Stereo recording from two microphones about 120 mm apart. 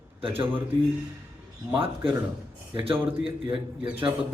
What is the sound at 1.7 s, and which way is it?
Speech, 45° right (ahead or behind).